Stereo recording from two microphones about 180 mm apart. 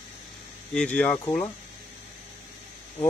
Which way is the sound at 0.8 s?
5° left (ahead or behind).